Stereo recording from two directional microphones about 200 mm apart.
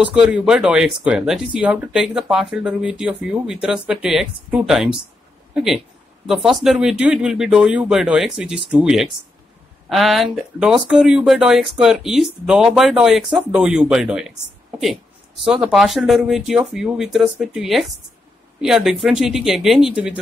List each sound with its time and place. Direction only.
0.0 s speech: 5° right (ahead or behind)
15.4 s speech: 5° right (ahead or behind)